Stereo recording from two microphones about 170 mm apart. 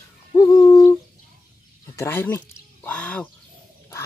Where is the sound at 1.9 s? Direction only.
15° left (ahead or behind).